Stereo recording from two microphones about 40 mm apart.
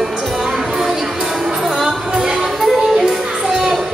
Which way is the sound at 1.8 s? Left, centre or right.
Centre.